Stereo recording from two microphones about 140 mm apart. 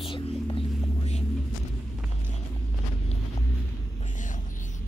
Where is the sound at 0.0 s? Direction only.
40° left (ahead or behind).